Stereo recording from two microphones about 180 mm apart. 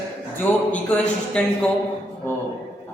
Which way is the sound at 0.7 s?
5° left (ahead or behind).